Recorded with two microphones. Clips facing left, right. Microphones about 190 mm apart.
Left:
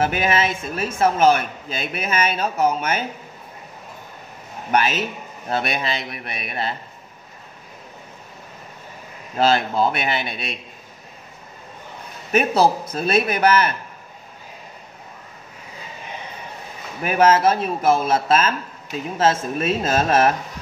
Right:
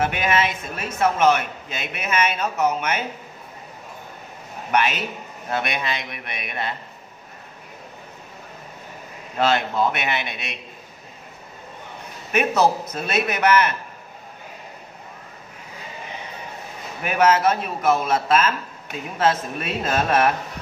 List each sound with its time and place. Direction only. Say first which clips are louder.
0.0 s a man's voice: left 1 dB; 30° left (ahead or behind)
4.6 s speech: left 2 dB; 35° left (ahead or behind)
9.4 s speech: left 2 dB; 30° left (ahead or behind)
12.3 s speech: left 2 dB; 30° left (ahead or behind)
17.0 s a man's voice: left 2 dB; 30° left (ahead or behind)